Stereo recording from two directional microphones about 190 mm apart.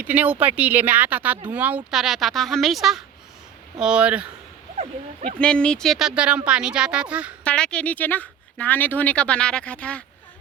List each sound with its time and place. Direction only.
0.0 s speech: 10° right (ahead or behind)
4.8 s speech: 40° right (ahead or behind)
5.4 s speech: 5° left (ahead or behind)
7.4 s speech: 5° left (ahead or behind)